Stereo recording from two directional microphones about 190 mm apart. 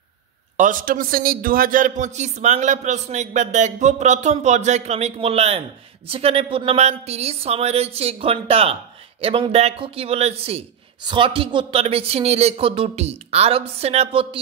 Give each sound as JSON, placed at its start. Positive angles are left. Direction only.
{"t": 0.6, "sound": "a man's voice", "side_deg": -45}